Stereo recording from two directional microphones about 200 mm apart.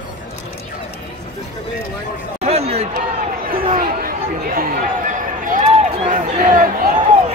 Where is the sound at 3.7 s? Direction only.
50° right (ahead or behind).